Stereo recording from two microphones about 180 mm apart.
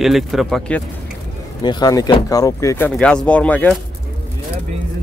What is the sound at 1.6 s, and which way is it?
Speech, 25° left (ahead or behind).